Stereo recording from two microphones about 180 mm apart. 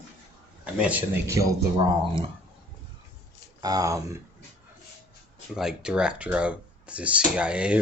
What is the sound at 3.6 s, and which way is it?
Speech, 20° right (ahead or behind).